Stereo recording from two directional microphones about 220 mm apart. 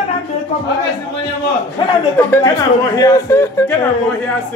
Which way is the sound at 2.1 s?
10° left (ahead or behind).